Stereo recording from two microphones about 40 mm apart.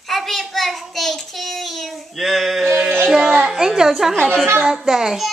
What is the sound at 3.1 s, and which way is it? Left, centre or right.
Speech, right.